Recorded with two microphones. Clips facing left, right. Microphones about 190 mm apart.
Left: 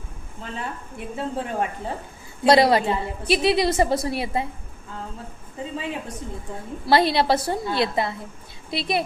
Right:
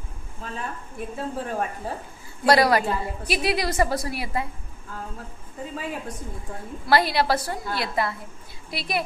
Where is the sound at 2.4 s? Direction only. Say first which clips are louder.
Left 2 dB; 25° left (ahead or behind).